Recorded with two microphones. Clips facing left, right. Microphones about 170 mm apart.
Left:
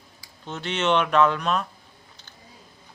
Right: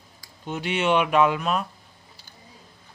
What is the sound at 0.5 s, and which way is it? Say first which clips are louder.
Speech: right 1 dB; 10° right (ahead or behind).